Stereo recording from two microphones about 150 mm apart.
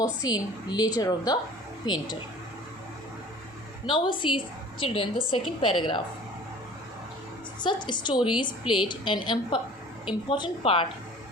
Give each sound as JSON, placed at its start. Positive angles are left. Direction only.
{"t": 0.0, "sound": "a woman's voice", "side_deg": 25}
{"t": 3.8, "sound": "a woman's voice", "side_deg": 30}
{"t": 7.6, "sound": "a woman's voice", "side_deg": 30}